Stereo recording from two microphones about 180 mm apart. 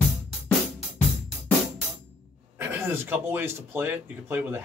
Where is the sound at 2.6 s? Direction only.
10° right (ahead or behind).